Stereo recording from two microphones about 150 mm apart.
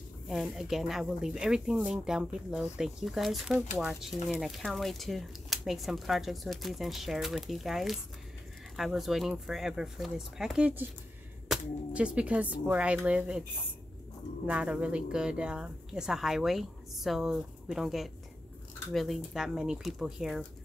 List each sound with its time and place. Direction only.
0.3 s speech: centre (ahead or behind)
14.4 s speech: 10° right (ahead or behind)